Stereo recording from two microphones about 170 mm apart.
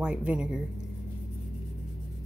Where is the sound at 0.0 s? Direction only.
10° right (ahead or behind).